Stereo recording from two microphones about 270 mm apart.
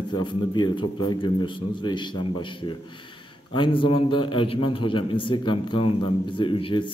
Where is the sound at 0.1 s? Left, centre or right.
Centre.